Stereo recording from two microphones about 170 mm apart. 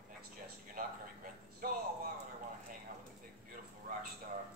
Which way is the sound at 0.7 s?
55° right (ahead or behind).